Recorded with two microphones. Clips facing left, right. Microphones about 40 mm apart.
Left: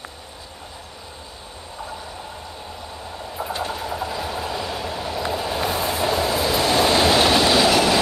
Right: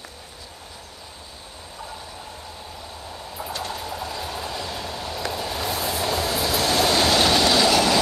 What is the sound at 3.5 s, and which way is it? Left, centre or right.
Train, centre.